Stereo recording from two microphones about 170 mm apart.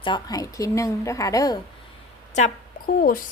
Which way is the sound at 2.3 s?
50° left (ahead or behind).